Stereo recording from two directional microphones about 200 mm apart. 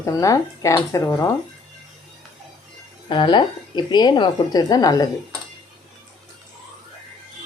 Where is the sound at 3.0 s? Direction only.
25° left (ahead or behind).